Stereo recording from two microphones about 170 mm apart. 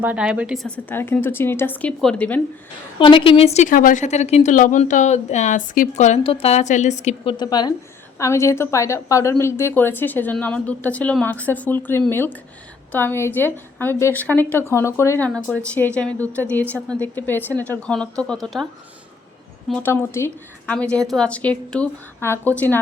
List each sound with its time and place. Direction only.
0.0 s a woman's voice: 5° right (ahead or behind)
0.9 s a woman's voice: 10° left (ahead or behind)
3.0 s a woman's voice: 30° left (ahead or behind)
7.3 s a woman's voice: 25° left (ahead or behind); by 18.7 s centre (ahead or behind)
19.7 s a woman's voice: 10° left (ahead or behind)